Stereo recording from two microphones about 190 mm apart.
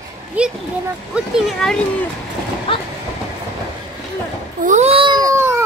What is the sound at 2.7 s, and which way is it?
Speech, 25° left (ahead or behind).